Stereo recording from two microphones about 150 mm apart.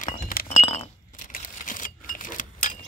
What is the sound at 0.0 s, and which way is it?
Chink, 75° left (ahead or behind).